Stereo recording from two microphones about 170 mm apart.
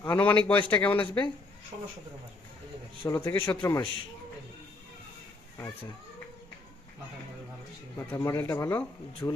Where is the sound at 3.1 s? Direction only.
15° left (ahead or behind).